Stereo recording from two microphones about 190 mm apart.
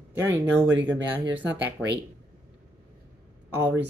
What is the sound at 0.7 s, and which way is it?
Speech, 70° right (ahead or behind).